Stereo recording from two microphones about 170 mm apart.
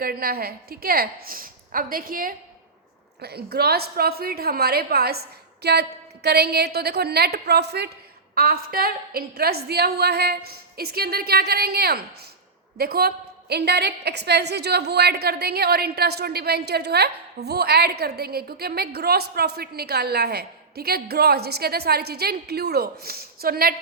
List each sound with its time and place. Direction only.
0.0 s a woman's voice: 60° right (ahead or behind)
3.2 s a woman's voice: 70° right (ahead or behind)
8.4 s a woman's voice: 60° right (ahead or behind)